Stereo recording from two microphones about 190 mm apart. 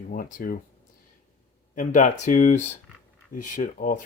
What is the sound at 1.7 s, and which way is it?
Speech, 40° left (ahead or behind).